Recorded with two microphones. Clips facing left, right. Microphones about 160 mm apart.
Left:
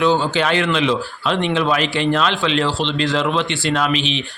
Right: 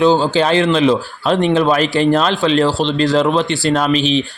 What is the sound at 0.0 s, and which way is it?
A man's voice, 35° right (ahead or behind).